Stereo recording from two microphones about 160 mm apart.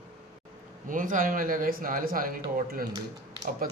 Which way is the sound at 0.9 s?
55° right (ahead or behind).